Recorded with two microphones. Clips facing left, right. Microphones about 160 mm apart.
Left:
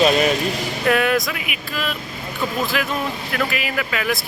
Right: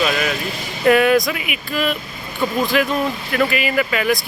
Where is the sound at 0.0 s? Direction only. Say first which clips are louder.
Left 4 dB; 25° left (ahead or behind).